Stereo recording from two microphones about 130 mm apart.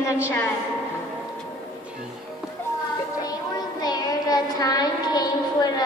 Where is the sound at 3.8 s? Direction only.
30° left (ahead or behind).